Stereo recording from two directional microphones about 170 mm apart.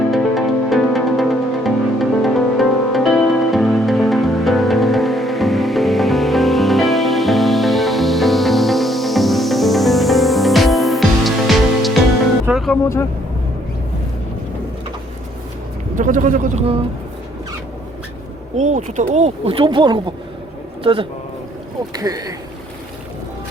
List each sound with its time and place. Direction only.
0.1 s music: centre (ahead or behind)
16.0 s speech: 50° right (ahead or behind)
18.5 s speech: 45° right (ahead or behind); by 22.4 s 20° right (ahead or behind)